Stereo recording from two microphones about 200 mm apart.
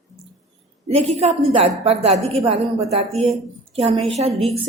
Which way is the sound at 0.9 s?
30° right (ahead or behind).